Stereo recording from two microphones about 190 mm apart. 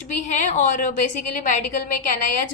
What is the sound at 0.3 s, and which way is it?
Speech, 40° left (ahead or behind).